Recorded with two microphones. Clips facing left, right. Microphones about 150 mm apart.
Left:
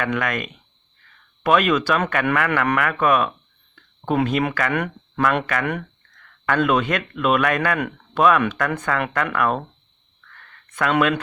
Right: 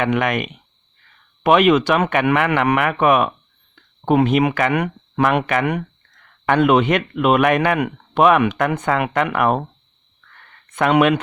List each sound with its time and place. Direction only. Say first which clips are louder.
0.0 s speech: right 5 dB; 20° right (ahead or behind)
10.7 s speech: right 4 dB; 20° right (ahead or behind)